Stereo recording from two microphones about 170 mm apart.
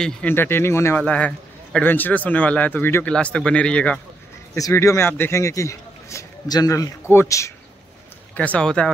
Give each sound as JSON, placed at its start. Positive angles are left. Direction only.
{"t": 0.0, "sound": "a man's voice", "side_deg": 10}
{"t": 4.6, "sound": "a man's voice", "side_deg": 20}
{"t": 8.4, "sound": "a man's voice", "side_deg": 5}